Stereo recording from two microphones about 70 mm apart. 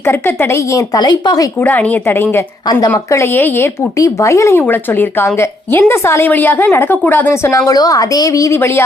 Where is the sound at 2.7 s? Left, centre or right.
Left.